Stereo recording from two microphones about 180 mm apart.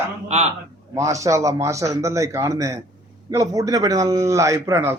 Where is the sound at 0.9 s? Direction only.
15° right (ahead or behind).